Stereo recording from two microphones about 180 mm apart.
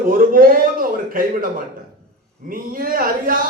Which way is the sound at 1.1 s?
50° right (ahead or behind).